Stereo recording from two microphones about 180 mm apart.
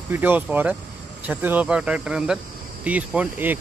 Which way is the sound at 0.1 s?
10° right (ahead or behind).